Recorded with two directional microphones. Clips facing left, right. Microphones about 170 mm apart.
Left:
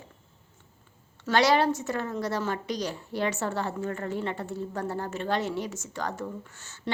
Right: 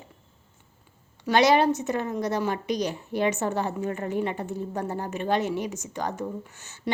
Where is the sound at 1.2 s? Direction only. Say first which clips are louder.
Right 3 dB; 20° right (ahead or behind).